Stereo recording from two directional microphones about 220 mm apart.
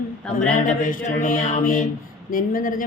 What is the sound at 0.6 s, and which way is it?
Speech, 35° left (ahead or behind).